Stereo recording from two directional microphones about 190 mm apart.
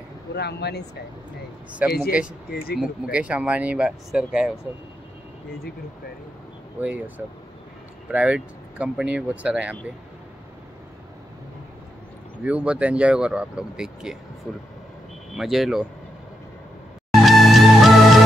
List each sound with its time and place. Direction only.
0.4 s speech: 60° left (ahead or behind)
1.9 s speech: 55° left (ahead or behind)
2.8 s speech: 5° right (ahead or behind)
6.8 s speech: 5° right (ahead or behind)
12.4 s speech: 5° right (ahead or behind)
15.3 s speech: centre (ahead or behind)
17.1 s music: centre (ahead or behind)